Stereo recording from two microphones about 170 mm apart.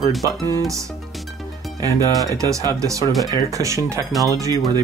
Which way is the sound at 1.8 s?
20° right (ahead or behind).